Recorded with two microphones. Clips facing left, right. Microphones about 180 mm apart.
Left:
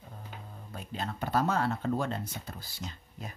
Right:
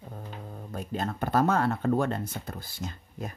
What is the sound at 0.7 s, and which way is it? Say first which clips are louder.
Speech: right 5 dB; 45° right (ahead or behind).